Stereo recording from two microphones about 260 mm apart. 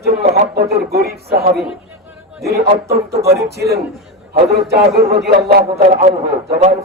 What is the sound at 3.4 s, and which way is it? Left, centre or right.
Speech, right.